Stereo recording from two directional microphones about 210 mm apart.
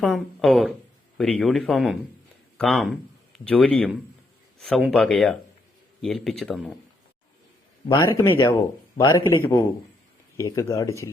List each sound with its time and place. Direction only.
0.0 s speech: centre (ahead or behind)
8.3 s speech: 15° left (ahead or behind)